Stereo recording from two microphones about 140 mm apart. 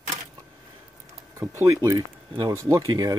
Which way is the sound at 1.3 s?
20° right (ahead or behind).